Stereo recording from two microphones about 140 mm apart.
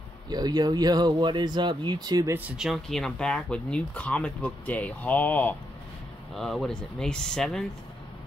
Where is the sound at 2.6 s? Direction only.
Centre (ahead or behind).